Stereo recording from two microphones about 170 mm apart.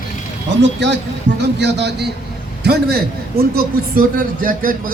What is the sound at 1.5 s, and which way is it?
Speech, 90° right.